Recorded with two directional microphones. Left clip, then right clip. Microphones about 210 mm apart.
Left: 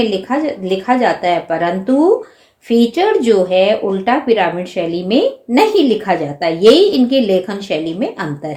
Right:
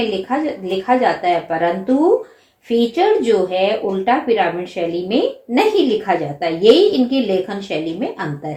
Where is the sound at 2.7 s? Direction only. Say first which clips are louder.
Left 2 dB; 50° left (ahead or behind).